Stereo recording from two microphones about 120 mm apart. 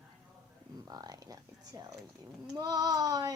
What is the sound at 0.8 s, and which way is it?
Speech, 35° right (ahead or behind).